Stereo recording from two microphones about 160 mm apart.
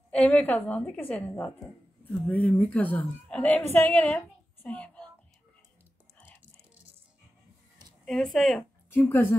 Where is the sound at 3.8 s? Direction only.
5° left (ahead or behind).